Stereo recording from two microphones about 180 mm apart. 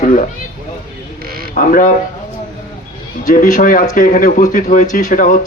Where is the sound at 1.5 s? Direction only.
45° left (ahead or behind).